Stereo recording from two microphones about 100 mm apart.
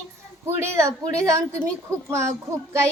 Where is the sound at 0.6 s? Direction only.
30° right (ahead or behind).